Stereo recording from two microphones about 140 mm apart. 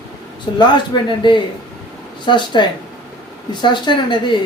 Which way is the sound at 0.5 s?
40° left (ahead or behind).